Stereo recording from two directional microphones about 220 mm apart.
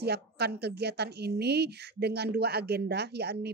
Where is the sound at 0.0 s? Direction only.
50° right (ahead or behind).